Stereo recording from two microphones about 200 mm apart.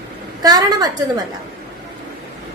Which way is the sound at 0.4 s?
20° right (ahead or behind).